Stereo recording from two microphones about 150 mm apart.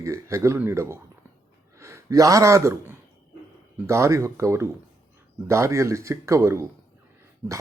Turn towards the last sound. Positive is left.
turn(degrees=-20)  # may be behind; listen again after turning